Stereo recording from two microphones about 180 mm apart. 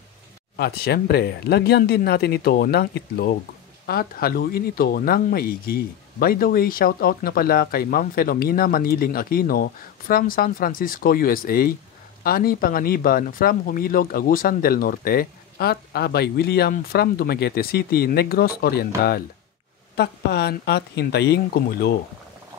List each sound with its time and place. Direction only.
0.6 s speech: 60° left (ahead or behind)
20.0 s speech: 65° left (ahead or behind)